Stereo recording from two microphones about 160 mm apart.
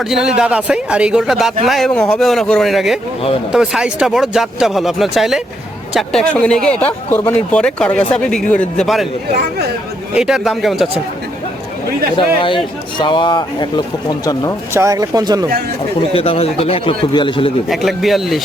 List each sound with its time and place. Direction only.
0.0 s speech: 5° right (ahead or behind)
9.3 s speech: 90° right
10.2 s speech: 5° right (ahead or behind)
12.1 s speech: 30° left (ahead or behind)
14.7 s speech: 20° right (ahead or behind)
16.1 s speech: 35° left (ahead or behind)
17.7 s speech: centre (ahead or behind)